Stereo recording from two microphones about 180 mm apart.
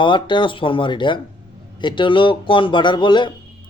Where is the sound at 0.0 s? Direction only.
25° left (ahead or behind).